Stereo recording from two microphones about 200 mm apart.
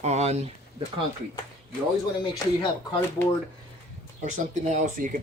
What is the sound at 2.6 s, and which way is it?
Speech, 20° left (ahead or behind).